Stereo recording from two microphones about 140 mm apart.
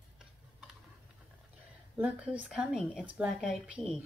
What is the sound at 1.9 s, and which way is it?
Speech, 10° right (ahead or behind).